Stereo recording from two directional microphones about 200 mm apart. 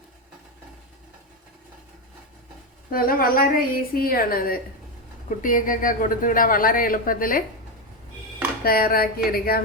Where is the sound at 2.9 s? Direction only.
45° left (ahead or behind).